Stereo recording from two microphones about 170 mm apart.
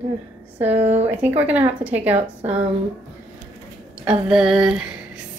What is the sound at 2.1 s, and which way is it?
Speech, 40° right (ahead or behind).